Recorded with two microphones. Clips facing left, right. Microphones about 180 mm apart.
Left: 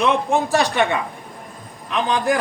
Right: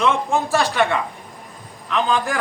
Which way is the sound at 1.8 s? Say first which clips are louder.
Left 1 dB; 20° left (ahead or behind).